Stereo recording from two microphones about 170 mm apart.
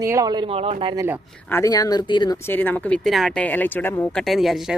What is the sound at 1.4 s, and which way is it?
Speech, 15° left (ahead or behind).